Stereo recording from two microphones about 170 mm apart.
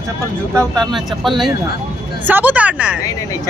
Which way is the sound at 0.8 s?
Centre (ahead or behind).